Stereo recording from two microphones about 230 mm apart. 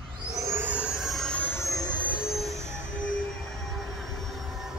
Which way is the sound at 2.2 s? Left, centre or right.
Centre.